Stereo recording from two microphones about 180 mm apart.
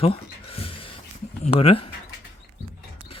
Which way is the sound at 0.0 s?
30° left (ahead or behind).